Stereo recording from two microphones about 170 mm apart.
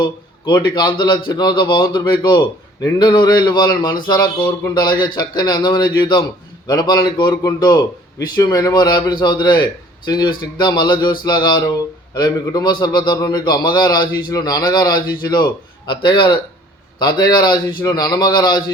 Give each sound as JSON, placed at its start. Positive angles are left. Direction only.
{"t": 0.0, "sound": "speech", "side_deg": 25}